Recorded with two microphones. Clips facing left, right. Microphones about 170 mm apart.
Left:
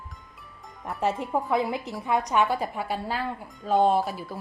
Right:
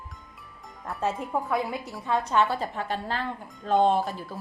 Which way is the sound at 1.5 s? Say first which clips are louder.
Left 3 dB; 20° left (ahead or behind).